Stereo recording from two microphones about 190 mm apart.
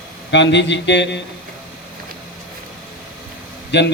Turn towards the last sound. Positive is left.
turn(degrees=65)  # may be behind; listen again after turning